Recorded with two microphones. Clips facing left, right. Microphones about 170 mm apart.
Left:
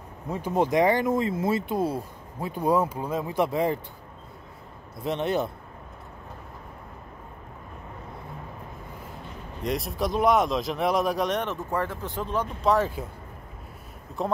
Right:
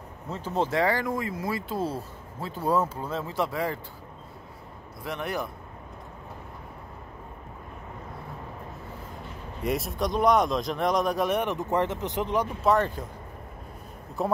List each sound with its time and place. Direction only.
0.3 s speech: 15° left (ahead or behind)
5.0 s a man's voice: 25° left (ahead or behind)
9.6 s speech: centre (ahead or behind); by 12.4 s 15° right (ahead or behind)
12.6 s speech: centre (ahead or behind)
14.2 s speech: 5° right (ahead or behind)